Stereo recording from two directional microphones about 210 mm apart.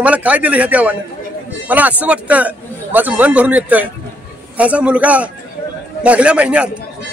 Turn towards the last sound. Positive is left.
turn(degrees=-5)  # may be behind; listen again after turning